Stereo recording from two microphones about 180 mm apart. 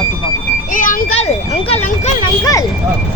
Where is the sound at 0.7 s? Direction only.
50° left (ahead or behind).